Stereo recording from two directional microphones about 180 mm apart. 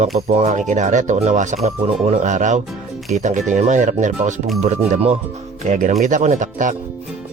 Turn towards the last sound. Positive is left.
turn(degrees=-45)  # may be behind; listen again after turning